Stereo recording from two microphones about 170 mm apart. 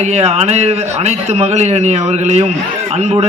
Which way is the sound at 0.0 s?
40° right (ahead or behind).